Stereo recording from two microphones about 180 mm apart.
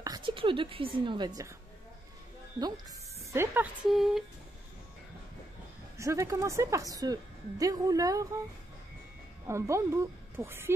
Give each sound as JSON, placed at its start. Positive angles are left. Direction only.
{"t": 0.0, "sound": "a woman's voice", "side_deg": -25}
{"t": 2.6, "sound": "speech", "side_deg": -15}
{"t": 3.9, "sound": "a sound", "side_deg": 0}
{"t": 5.9, "sound": "a woman's voice", "side_deg": -15}
{"t": 9.5, "sound": "speech", "side_deg": -15}